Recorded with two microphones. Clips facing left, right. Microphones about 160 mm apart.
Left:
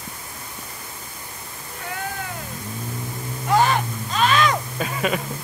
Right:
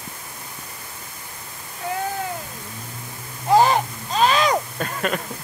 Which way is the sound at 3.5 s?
30° right (ahead or behind).